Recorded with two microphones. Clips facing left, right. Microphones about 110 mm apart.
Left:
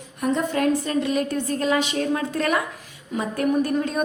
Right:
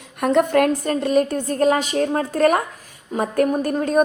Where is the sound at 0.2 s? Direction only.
65° right (ahead or behind).